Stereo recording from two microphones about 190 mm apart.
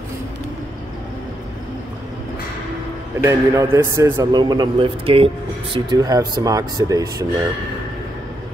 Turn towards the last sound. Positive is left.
turn(degrees=-20)  # may be behind; listen again after turning